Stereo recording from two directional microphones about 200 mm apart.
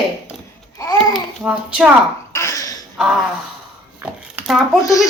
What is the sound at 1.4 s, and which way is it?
Speech, 5° right (ahead or behind).